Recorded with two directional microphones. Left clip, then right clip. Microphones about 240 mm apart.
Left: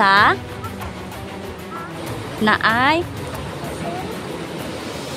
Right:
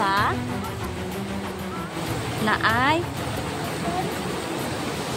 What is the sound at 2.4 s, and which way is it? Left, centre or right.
Speech, centre.